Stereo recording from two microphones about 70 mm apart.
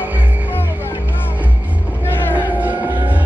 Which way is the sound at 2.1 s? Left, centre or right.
Left.